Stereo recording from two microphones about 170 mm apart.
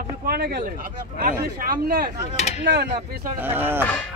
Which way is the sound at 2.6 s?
80° right.